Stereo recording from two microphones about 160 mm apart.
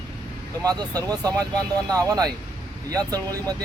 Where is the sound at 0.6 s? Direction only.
25° right (ahead or behind).